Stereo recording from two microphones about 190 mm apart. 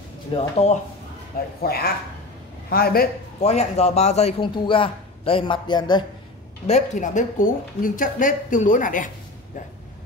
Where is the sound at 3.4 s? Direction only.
35° left (ahead or behind).